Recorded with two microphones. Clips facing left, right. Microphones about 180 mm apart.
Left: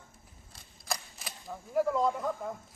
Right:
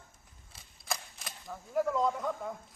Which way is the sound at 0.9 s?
Centre (ahead or behind).